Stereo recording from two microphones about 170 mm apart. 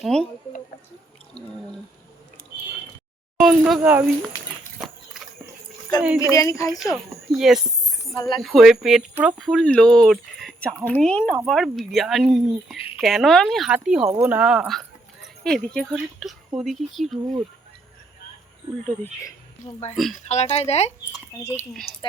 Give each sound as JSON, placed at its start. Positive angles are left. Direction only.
{"t": 0.0, "sound": "speech", "side_deg": 5}
{"t": 3.3, "sound": "speech", "side_deg": 0}
{"t": 4.8, "sound": "horse", "side_deg": 0}
{"t": 6.3, "sound": "speech", "side_deg": 20}
{"t": 6.7, "sound": "speech", "side_deg": 0}
{"t": 8.1, "sound": "speech", "side_deg": 20}
{"t": 8.4, "sound": "speech", "side_deg": 0}
{"t": 20.2, "sound": "speech", "side_deg": 40}